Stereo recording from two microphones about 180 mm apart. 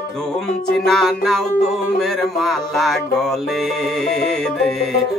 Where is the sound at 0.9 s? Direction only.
Centre (ahead or behind).